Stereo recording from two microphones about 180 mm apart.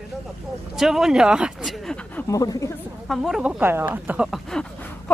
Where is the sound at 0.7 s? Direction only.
Centre (ahead or behind).